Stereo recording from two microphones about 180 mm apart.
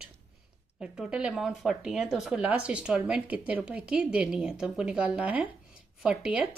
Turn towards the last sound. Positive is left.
turn(degrees=-5)  # may be behind; listen again after turning